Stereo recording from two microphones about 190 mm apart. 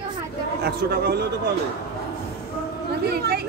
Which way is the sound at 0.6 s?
55° right (ahead or behind).